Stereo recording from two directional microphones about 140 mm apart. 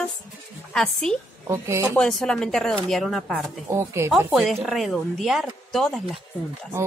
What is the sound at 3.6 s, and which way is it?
Speech, 20° right (ahead or behind).